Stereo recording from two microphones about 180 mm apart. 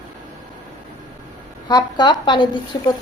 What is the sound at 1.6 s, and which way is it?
Speech, 25° left (ahead or behind).